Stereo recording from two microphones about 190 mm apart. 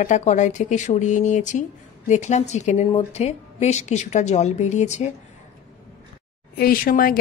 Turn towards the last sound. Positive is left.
turn(degrees=50)  # may be behind; listen again after turning